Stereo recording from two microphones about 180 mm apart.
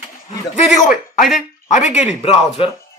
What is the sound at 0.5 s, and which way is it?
Speech, 45° left (ahead or behind).